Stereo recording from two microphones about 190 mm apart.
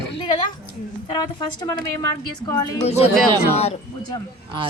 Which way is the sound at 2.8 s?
35° left (ahead or behind).